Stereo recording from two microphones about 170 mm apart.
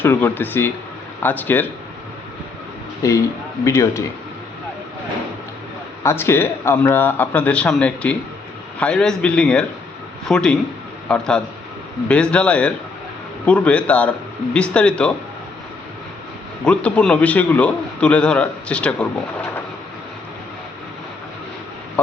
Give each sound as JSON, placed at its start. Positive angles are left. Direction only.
{"t": 0.0, "sound": "a man's voice", "side_deg": 10}
{"t": 3.0, "sound": "a man's voice", "side_deg": 20}
{"t": 6.0, "sound": "a man's voice", "side_deg": 15}
{"t": 16.6, "sound": "a man's voice", "side_deg": 5}